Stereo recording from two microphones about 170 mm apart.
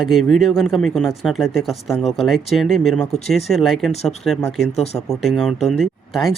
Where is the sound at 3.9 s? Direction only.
40° left (ahead or behind).